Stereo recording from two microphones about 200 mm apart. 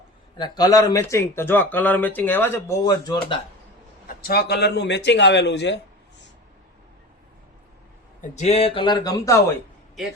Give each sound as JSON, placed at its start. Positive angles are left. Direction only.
{"t": 0.3, "sound": "speech", "side_deg": 20}
{"t": 4.2, "sound": "a man's voice", "side_deg": 50}
{"t": 8.2, "sound": "a man's voice", "side_deg": 35}